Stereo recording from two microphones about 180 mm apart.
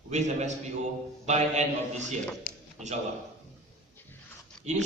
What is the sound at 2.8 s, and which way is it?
Speech, 40° right (ahead or behind).